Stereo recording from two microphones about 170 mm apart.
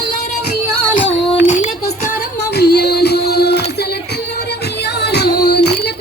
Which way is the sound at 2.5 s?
70° left (ahead or behind).